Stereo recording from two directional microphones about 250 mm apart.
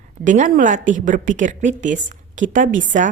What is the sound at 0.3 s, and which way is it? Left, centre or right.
A woman's voice, right.